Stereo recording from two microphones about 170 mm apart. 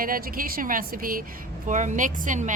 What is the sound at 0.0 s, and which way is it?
Speech, 55° right (ahead or behind).